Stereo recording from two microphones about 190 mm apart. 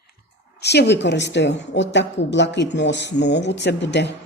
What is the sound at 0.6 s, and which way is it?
Speech, 60° left (ahead or behind).